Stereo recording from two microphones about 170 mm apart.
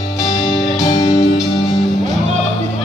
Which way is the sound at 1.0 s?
40° left (ahead or behind).